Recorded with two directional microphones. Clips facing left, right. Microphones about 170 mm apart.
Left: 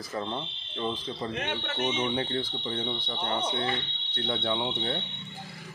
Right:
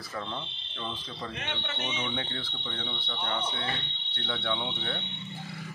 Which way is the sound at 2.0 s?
35° left (ahead or behind).